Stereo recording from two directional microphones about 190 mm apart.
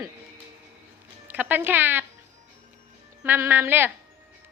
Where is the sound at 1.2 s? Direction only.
10° right (ahead or behind).